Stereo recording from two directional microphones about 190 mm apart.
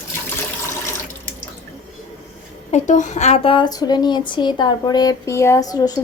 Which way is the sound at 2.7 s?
40° left (ahead or behind).